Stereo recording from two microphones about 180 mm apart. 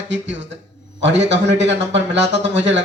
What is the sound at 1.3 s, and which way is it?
Speech, 80° right.